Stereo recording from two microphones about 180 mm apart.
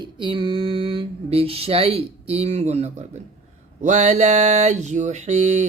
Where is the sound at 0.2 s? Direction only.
30° right (ahead or behind).